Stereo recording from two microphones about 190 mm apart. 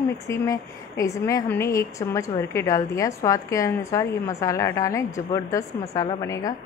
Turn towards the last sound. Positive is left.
turn(degrees=15)  # may be behind; listen again after turning